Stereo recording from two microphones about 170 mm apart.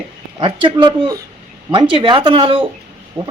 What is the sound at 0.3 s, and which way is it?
A man's voice, 30° right (ahead or behind).